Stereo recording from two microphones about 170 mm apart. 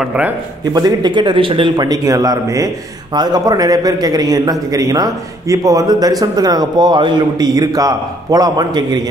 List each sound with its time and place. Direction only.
0.0 s speech: 5° right (ahead or behind)
0.7 s a man's voice: 25° right (ahead or behind)